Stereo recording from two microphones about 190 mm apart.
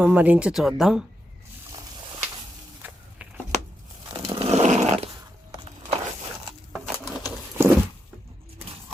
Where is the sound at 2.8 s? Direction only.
10° right (ahead or behind).